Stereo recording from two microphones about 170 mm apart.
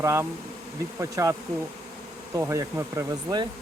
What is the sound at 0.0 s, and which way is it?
Speech, 15° right (ahead or behind).